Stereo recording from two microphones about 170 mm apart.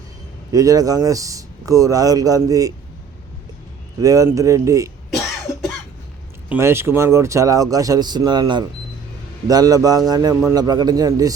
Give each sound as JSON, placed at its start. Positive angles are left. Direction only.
{"t": 0.5, "sound": "speech", "side_deg": -20}
{"t": 4.0, "sound": "speech", "side_deg": -20}
{"t": 6.5, "sound": "speech", "side_deg": -15}